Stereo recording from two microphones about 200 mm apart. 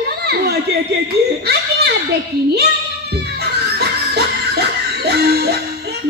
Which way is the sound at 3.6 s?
55° right (ahead or behind).